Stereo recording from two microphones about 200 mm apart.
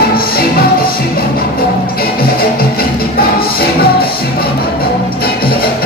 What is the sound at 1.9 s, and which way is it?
Music, 50° left (ahead or behind).